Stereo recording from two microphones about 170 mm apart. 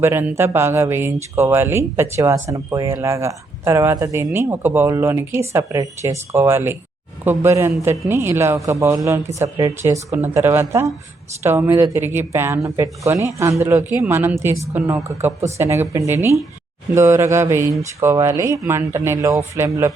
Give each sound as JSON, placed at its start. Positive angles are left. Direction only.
{"t": 0.0, "sound": "speech", "side_deg": -15}